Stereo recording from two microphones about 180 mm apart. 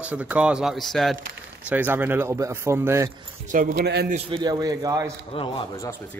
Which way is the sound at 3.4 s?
50° right (ahead or behind).